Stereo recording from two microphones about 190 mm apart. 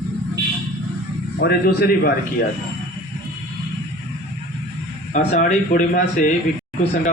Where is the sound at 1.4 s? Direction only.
55° left (ahead or behind).